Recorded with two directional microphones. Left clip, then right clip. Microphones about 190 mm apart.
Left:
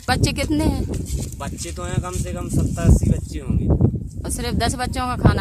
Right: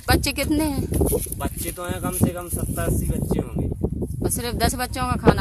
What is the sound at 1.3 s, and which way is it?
Speech, 15° left (ahead or behind).